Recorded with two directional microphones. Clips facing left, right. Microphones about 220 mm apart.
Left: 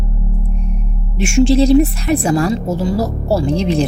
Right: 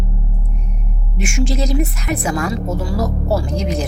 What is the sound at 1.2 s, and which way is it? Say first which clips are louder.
A woman's voice: left 9 dB; 30° left (ahead or behind).